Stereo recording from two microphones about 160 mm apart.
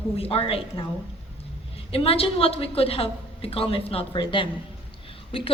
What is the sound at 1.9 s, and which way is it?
A woman's voice, 35° left (ahead or behind).